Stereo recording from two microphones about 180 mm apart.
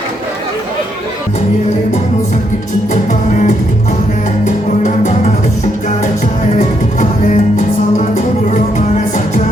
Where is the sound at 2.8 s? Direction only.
45° left (ahead or behind).